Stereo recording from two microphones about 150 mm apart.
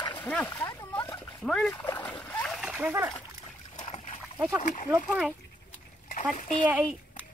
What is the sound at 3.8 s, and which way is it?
Splash, 40° left (ahead or behind).